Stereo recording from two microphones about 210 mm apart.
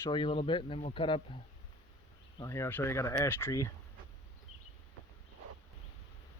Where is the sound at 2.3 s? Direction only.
15° left (ahead or behind).